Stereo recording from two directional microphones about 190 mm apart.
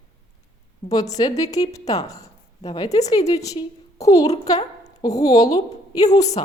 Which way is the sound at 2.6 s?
30° left (ahead or behind).